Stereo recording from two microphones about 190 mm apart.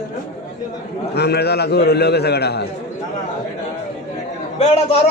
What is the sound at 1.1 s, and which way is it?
A man's voice, 60° left (ahead or behind).